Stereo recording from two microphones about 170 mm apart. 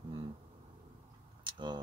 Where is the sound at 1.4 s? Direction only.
25° right (ahead or behind).